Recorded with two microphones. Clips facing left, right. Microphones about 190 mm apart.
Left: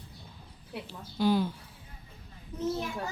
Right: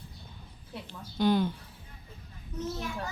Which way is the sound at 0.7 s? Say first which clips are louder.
Left 2 dB; 5° left (ahead or behind).